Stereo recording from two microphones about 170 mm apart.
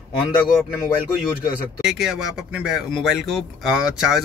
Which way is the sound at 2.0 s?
5° right (ahead or behind).